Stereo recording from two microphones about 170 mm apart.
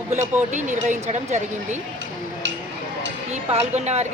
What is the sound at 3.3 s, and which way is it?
Speech, 40° right (ahead or behind).